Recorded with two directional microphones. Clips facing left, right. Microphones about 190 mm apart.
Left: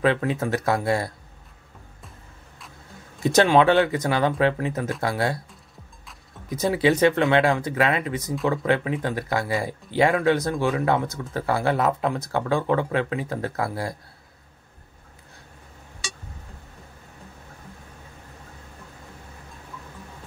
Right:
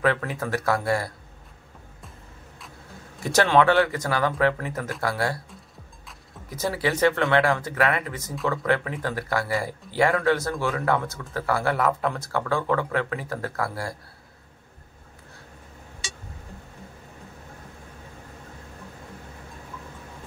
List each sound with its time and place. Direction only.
0.0 s speech: 20° left (ahead or behind)
3.3 s speech: 20° left (ahead or behind)
6.5 s speech: 20° left (ahead or behind)